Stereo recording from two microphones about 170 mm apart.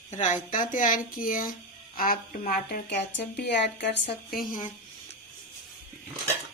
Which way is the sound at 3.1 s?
85° left.